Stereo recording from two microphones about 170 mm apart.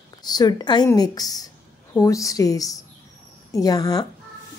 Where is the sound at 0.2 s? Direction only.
25° left (ahead or behind).